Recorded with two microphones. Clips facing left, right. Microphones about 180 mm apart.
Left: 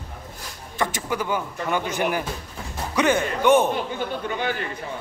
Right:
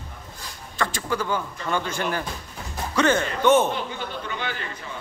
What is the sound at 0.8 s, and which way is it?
A man's voice, 20° left (ahead or behind).